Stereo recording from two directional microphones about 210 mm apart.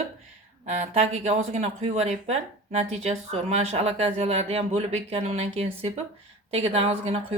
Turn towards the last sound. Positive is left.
turn(degrees=-30)  # may be behind; listen again after turning